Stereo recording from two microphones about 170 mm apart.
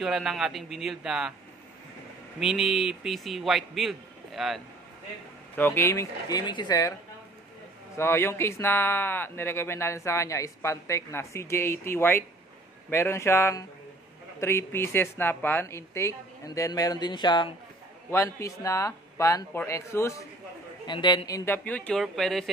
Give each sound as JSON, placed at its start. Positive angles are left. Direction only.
{"t": 0.0, "sound": "a man's voice", "side_deg": 0}
{"t": 2.4, "sound": "a man's voice", "side_deg": 0}
{"t": 5.6, "sound": "speech", "side_deg": 15}
{"t": 8.0, "sound": "speech", "side_deg": 15}
{"t": 21.5, "sound": "a man's voice", "side_deg": 10}